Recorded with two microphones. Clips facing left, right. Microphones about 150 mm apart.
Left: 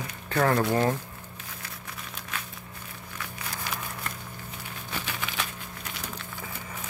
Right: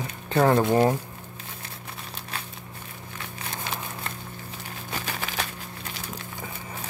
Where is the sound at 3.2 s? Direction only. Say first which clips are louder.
Right 2 dB; 25° right (ahead or behind).